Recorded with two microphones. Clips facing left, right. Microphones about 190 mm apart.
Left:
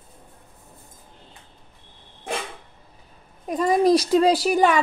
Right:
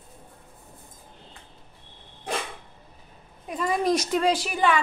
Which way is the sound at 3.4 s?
40° left (ahead or behind).